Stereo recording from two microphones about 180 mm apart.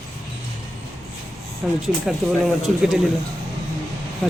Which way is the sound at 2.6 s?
Centre (ahead or behind).